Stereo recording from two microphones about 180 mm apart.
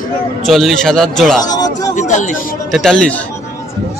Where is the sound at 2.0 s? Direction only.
40° left (ahead or behind).